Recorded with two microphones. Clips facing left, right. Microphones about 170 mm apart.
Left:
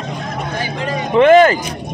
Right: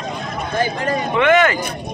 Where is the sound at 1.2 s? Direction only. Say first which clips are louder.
Left 7 dB; 35° left (ahead or behind).